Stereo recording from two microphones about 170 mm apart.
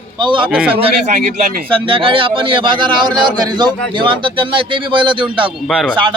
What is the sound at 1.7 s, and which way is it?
A man's voice, 30° right (ahead or behind).